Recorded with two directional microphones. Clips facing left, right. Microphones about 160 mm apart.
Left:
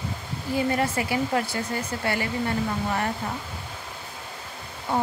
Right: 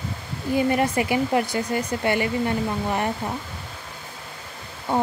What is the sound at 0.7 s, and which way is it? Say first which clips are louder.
Speech: right 4 dB; 15° right (ahead or behind).